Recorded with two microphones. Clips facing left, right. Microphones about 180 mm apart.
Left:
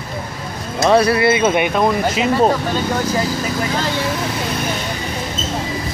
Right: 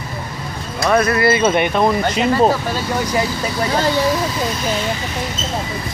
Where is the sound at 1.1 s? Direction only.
10° left (ahead or behind).